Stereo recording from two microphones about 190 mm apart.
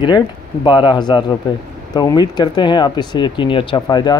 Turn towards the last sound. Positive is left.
turn(degrees=20)  # may be behind; listen again after turning